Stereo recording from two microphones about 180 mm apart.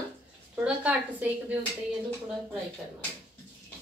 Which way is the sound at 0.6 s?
10° right (ahead or behind).